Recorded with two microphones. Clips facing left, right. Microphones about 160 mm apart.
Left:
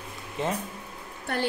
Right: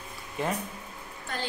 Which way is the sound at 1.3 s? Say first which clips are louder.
Left 6 dB; 60° left (ahead or behind).